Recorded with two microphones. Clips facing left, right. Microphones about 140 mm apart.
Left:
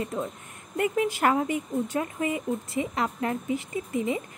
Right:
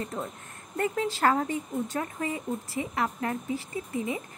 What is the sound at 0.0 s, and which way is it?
Speech, 10° left (ahead or behind).